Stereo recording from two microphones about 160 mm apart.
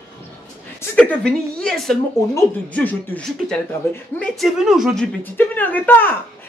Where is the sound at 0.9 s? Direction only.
5° left (ahead or behind).